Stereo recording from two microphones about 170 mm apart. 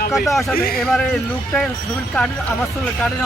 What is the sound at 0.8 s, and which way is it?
Speech, centre (ahead or behind).